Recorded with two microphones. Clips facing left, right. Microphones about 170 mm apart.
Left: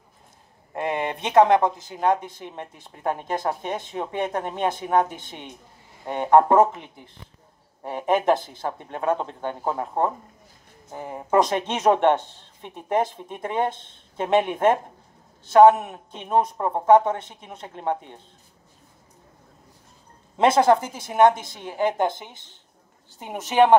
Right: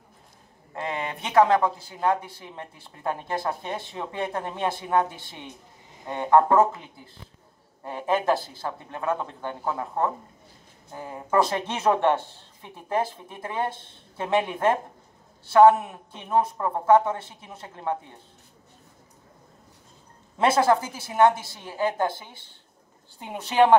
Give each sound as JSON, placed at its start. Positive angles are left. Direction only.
{"t": 0.7, "sound": "a woman's voice", "side_deg": 20}
{"t": 7.8, "sound": "a woman's voice", "side_deg": 20}
{"t": 20.3, "sound": "a woman's voice", "side_deg": 25}
{"t": 22.3, "sound": "speech", "side_deg": -10}
{"t": 23.2, "sound": "a woman's voice", "side_deg": 15}